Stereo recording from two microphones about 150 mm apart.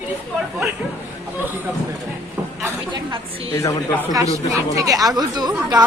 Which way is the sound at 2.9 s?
30° right (ahead or behind).